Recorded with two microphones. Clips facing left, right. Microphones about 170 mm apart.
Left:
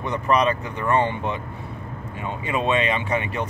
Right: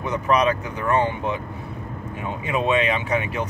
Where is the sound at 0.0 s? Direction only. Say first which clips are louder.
Even; 5° right (ahead or behind).